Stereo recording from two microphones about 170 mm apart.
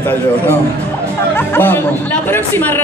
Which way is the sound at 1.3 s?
10° left (ahead or behind).